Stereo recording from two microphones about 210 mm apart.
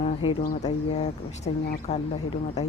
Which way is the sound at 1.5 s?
25° left (ahead or behind).